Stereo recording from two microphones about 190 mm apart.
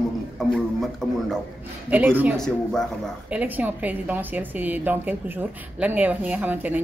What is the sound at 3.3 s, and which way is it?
A woman's voice, 10° right (ahead or behind).